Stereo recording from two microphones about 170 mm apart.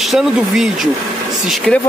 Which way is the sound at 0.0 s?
Centre (ahead or behind).